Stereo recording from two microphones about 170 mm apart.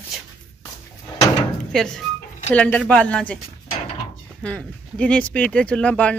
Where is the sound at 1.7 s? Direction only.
Centre (ahead or behind).